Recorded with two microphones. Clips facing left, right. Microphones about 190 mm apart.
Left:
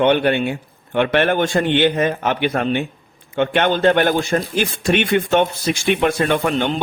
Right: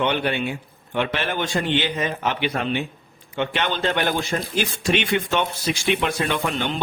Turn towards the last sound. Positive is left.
turn(degrees=50)  # may be behind; listen again after turning